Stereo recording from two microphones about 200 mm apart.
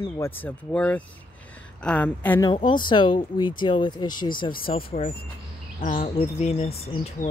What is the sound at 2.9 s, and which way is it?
Speech, 25° left (ahead or behind).